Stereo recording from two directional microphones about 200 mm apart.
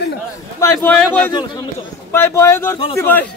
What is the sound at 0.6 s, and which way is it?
A man's voice, 10° left (ahead or behind).